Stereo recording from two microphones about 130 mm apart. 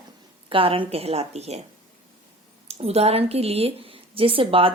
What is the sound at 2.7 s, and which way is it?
A woman's voice, 55° right (ahead or behind).